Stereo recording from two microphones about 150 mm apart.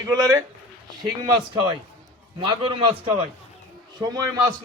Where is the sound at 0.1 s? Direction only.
25° right (ahead or behind).